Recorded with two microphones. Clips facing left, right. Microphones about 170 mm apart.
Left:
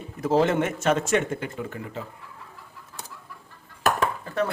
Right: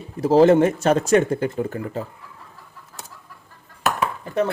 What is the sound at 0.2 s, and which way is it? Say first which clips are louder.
Speech: right 8 dB; 35° right (ahead or behind).